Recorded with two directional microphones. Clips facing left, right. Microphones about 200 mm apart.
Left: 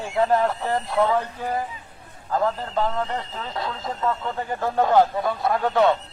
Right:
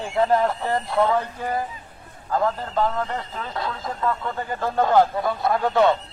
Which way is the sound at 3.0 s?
25° left (ahead or behind).